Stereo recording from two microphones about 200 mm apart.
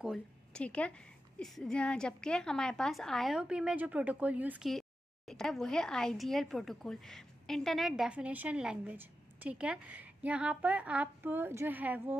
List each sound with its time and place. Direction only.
0.0 s a woman's voice: centre (ahead or behind)